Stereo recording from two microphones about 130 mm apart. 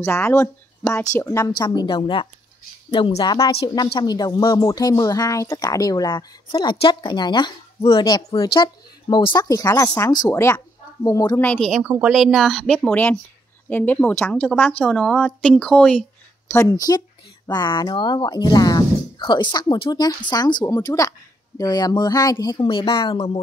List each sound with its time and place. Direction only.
0.0 s speech: 20° left (ahead or behind)
11.4 s a woman's voice: 10° left (ahead or behind)
11.8 s speech: 10° right (ahead or behind)
12.1 s a woman's voice: centre (ahead or behind)
16.4 s speech: 20° left (ahead or behind)
17.5 s speech: 35° left (ahead or behind); by 23.4 s 50° left (ahead or behind)